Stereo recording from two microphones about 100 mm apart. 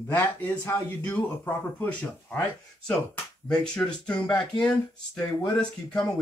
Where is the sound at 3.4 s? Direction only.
10° left (ahead or behind).